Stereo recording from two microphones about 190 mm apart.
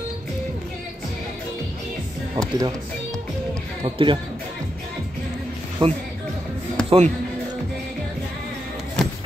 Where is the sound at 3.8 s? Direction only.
25° right (ahead or behind).